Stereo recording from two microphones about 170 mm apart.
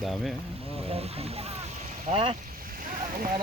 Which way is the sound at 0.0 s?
Centre (ahead or behind).